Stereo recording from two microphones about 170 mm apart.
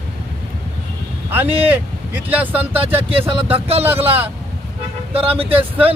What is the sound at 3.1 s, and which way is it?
Speech, 35° right (ahead or behind).